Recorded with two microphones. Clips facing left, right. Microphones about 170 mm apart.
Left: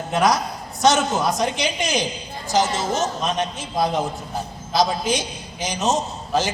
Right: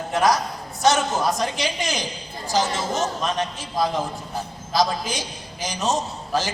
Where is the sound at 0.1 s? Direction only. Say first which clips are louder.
Left 1 dB; 20° left (ahead or behind).